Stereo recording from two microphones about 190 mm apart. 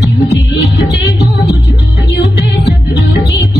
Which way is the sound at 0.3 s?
65° left (ahead or behind).